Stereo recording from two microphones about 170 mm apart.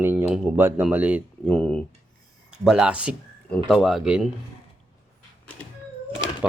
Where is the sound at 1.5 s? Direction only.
5° left (ahead or behind).